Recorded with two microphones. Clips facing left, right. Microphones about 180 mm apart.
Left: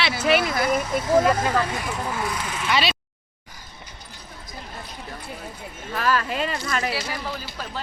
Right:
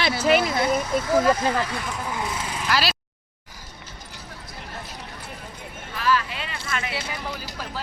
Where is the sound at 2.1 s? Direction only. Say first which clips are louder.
Left 1 dB; 20° right (ahead or behind).